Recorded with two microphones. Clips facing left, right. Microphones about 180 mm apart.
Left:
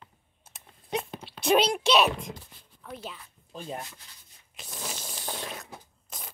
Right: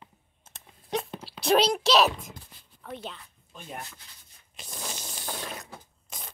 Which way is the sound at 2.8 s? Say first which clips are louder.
Right 1 dB; 5° left (ahead or behind).